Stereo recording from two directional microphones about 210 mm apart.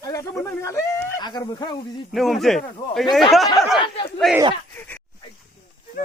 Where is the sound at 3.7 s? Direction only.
25° left (ahead or behind).